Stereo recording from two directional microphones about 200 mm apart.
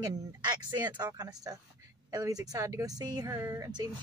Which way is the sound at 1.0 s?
10° right (ahead or behind).